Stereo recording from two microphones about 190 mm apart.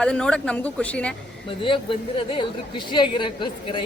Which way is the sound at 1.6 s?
25° left (ahead or behind).